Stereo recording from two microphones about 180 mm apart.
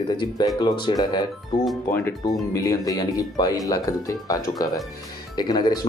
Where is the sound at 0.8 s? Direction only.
25° left (ahead or behind).